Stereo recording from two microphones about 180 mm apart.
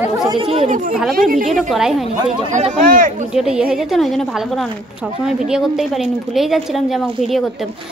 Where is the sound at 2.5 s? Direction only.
40° right (ahead or behind).